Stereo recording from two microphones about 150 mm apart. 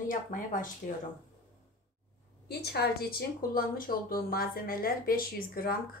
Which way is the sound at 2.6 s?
90° left.